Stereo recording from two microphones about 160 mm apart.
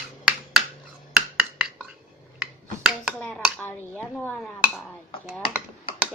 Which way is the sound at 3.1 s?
Centre (ahead or behind).